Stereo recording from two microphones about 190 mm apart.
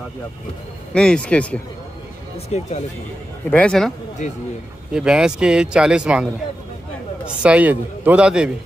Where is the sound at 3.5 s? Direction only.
5° left (ahead or behind).